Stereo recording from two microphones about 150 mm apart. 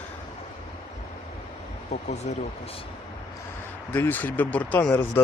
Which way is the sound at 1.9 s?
50° left (ahead or behind).